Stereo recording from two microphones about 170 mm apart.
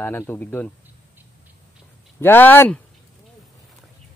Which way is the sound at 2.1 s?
10° left (ahead or behind).